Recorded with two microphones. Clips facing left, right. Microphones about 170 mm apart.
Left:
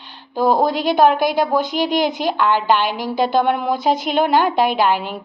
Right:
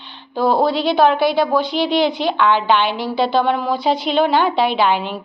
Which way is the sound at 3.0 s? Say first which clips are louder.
Even; 45° left (ahead or behind).